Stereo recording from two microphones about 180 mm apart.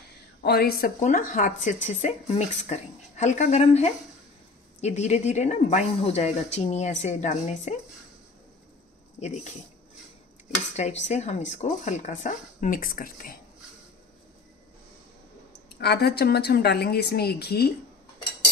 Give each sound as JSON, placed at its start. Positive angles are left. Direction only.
{"t": 0.4, "sound": "speech", "side_deg": 60}
{"t": 9.2, "sound": "speech", "side_deg": 40}
{"t": 10.8, "sound": "speech", "side_deg": 40}
{"t": 15.8, "sound": "a woman's voice", "side_deg": 65}